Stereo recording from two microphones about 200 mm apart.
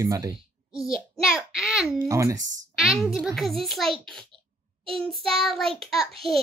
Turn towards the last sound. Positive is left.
turn(degrees=0)  # may be behind; listen again after turning